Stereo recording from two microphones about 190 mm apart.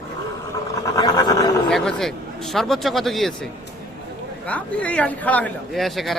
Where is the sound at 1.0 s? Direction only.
20° left (ahead or behind).